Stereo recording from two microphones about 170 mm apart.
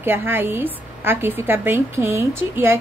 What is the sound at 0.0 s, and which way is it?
A woman's voice, 15° right (ahead or behind).